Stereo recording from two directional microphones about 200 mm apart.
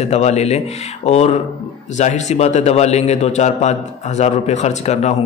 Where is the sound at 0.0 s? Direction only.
35° left (ahead or behind).